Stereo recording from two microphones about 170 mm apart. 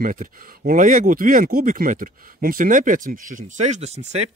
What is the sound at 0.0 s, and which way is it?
A man's voice, 50° right (ahead or behind).